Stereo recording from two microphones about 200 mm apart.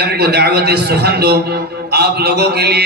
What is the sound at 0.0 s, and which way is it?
A man's voice, 55° right (ahead or behind).